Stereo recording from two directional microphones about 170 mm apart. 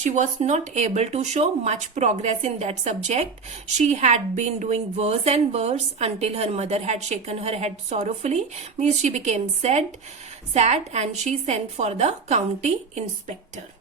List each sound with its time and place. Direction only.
0.0 s a woman's voice: 45° right (ahead or behind)